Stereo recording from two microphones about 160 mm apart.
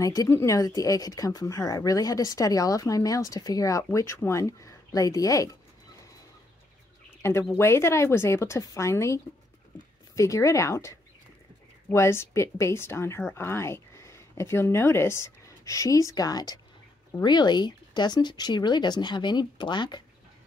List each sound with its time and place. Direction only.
0.0 s speech: 20° left (ahead or behind)
7.2 s bird: 15° left (ahead or behind)
7.5 s speech: 15° left (ahead or behind)